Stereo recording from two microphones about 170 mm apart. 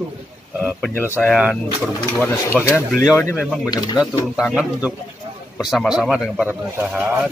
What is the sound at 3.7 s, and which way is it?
Speech, 25° left (ahead or behind).